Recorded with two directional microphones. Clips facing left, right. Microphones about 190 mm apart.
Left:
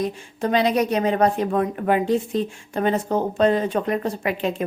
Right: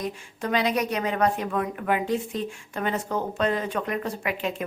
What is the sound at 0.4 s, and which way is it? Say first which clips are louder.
A woman's voice: left 5 dB; 30° left (ahead or behind).